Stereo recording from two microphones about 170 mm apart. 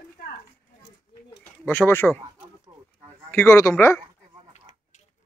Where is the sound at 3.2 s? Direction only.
15° left (ahead or behind).